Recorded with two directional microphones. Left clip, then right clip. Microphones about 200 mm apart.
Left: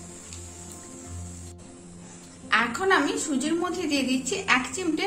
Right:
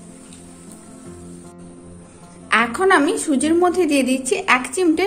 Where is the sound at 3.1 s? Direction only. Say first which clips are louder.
Right 9 dB; 45° right (ahead or behind).